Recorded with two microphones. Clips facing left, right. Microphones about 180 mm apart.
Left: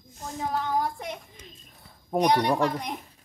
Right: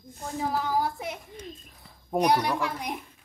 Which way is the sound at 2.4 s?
35° left (ahead or behind).